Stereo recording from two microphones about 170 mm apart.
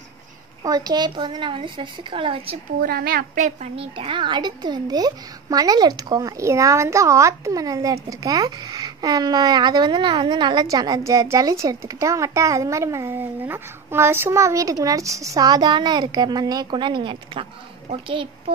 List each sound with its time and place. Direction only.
0.7 s speech: 25° right (ahead or behind)
2.8 s a woman's voice: 60° right (ahead or behind)
3.4 s speech: 35° right (ahead or behind)